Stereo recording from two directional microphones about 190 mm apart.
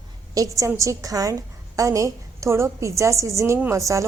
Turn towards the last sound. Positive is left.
turn(degrees=-15)  # may be behind; listen again after turning